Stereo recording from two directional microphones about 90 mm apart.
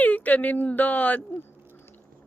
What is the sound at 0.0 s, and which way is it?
Speech, 20° left (ahead or behind).